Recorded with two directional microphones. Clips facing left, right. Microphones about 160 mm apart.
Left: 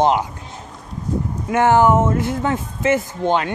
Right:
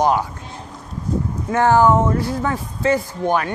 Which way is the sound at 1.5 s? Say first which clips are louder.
Even; 20° left (ahead or behind).